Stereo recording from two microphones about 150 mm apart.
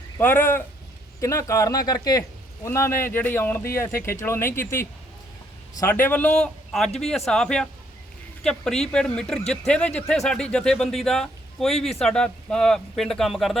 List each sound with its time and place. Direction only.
0.2 s speech: 10° left (ahead or behind)